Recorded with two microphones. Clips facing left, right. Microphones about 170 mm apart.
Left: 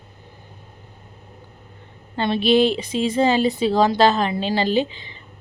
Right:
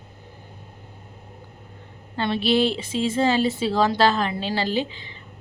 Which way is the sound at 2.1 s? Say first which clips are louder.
Left 4 dB; 20° left (ahead or behind).